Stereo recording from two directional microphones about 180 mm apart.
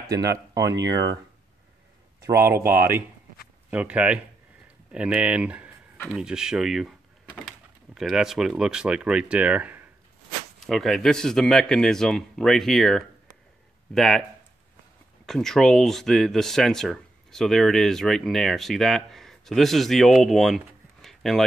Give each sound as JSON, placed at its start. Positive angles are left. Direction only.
{"t": 0.2, "sound": "speech", "side_deg": -20}
{"t": 2.7, "sound": "speech", "side_deg": -15}
{"t": 10.7, "sound": "speech", "side_deg": 0}
{"t": 15.2, "sound": "speech", "side_deg": 0}